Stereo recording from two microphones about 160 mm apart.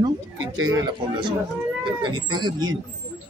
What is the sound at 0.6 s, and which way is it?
A man's voice, 30° right (ahead or behind).